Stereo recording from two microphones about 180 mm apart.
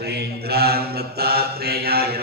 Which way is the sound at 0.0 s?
65° right (ahead or behind).